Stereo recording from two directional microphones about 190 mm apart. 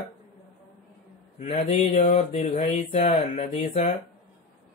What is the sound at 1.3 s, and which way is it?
Speech, 35° left (ahead or behind).